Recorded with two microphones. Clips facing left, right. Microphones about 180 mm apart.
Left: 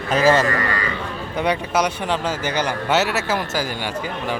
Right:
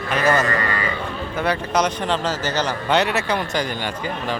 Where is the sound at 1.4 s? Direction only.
10° left (ahead or behind).